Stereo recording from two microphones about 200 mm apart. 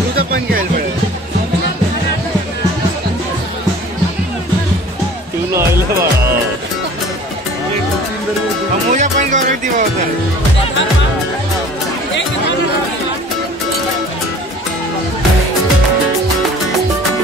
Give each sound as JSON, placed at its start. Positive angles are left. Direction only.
{"t": 0.3, "sound": "music", "side_deg": -50}
{"t": 5.5, "sound": "music", "side_deg": -15}
{"t": 8.9, "sound": "music", "side_deg": -35}